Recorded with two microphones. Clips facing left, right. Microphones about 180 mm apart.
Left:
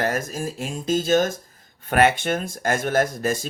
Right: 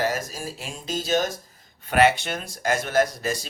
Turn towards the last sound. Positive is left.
turn(degrees=50)  # may be behind; listen again after turning